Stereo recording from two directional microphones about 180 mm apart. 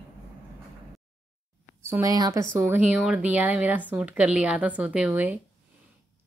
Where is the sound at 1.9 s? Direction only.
20° right (ahead or behind).